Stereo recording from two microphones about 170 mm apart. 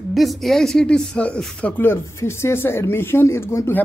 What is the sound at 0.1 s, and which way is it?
Speech, centre (ahead or behind).